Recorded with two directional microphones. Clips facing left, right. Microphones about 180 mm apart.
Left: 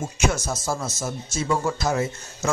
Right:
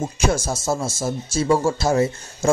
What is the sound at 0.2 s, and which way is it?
Speech, 30° right (ahead or behind).